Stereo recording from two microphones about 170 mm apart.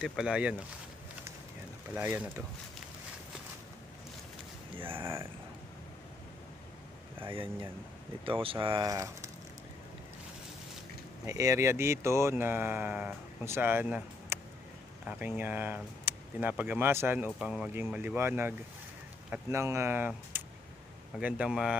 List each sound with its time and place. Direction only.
0.0 s speech: 5° right (ahead or behind)
2.0 s speech: 10° right (ahead or behind)
4.7 s speech: 30° right (ahead or behind)
5.0 s speech: 15° right (ahead or behind)
8.3 s speech: 30° right (ahead or behind)
8.6 s speech: 20° right (ahead or behind)
11.2 s speech: 20° right (ahead or behind)